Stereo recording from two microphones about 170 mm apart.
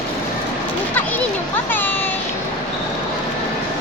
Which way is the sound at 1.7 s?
10° left (ahead or behind).